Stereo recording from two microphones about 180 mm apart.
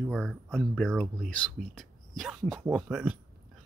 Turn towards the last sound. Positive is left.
turn(degrees=-5)  # may be behind; listen again after turning